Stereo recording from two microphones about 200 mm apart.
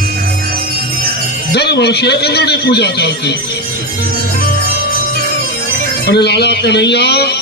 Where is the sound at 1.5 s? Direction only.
55° left (ahead or behind).